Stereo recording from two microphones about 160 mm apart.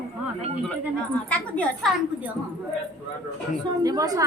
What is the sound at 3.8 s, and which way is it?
Speech, 25° right (ahead or behind).